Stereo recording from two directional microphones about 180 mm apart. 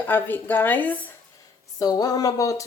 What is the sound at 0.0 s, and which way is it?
Speech, 10° left (ahead or behind).